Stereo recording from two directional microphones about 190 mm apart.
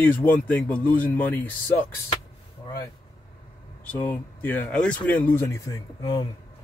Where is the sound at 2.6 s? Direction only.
20° left (ahead or behind).